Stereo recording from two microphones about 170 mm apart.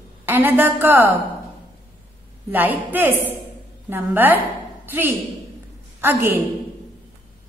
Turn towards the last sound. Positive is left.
turn(degrees=-15)  # may be behind; listen again after turning